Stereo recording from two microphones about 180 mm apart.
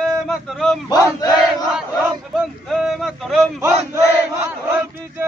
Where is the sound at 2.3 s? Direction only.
Centre (ahead or behind).